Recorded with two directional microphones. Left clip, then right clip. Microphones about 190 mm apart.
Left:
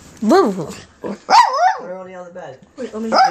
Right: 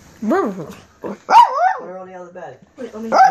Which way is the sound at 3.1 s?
20° right (ahead or behind).